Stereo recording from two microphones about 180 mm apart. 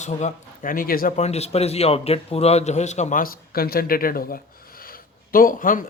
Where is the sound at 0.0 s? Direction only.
45° left (ahead or behind).